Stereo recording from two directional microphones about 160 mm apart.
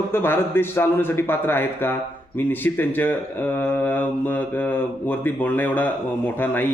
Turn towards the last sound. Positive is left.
turn(degrees=10)  # may be behind; listen again after turning